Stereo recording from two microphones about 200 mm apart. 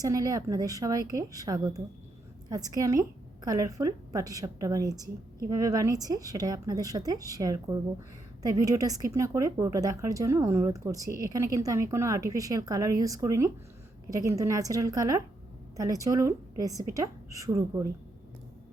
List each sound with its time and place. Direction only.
0.0 s a woman's voice: 15° right (ahead or behind)